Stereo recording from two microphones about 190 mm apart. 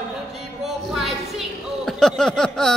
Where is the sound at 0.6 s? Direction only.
Centre (ahead or behind).